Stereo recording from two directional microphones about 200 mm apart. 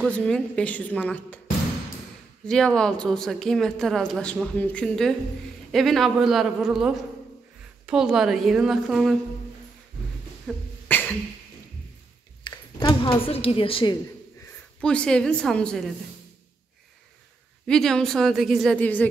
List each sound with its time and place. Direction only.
0.0 s a woman's voice: 5° left (ahead or behind)
2.4 s a woman's voice: 5° left (ahead or behind)
10.4 s beatboxing: 10° left (ahead or behind)
12.4 s a woman's voice: 20° left (ahead or behind)
14.8 s a woman's voice: 5° left (ahead or behind)
17.6 s a woman's voice: 5° left (ahead or behind)